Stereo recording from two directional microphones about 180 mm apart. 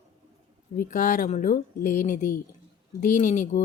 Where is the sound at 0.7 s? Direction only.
45° left (ahead or behind).